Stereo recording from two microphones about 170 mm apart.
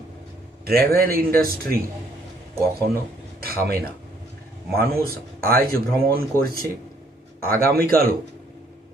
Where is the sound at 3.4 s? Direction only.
60° right (ahead or behind).